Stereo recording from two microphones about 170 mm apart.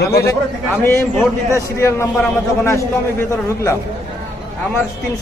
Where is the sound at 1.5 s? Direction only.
15° left (ahead or behind).